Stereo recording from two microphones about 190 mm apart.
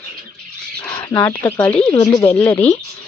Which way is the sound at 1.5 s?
15° left (ahead or behind).